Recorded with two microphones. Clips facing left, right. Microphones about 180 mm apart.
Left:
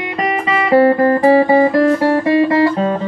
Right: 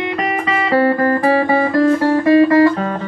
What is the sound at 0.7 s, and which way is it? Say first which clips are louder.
Music: left 4 dB; 25° left (ahead or behind).